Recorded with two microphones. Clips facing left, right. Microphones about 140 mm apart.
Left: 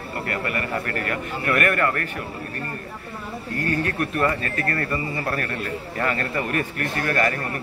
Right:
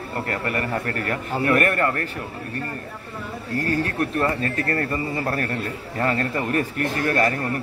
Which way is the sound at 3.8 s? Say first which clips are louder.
Even; 30° right (ahead or behind).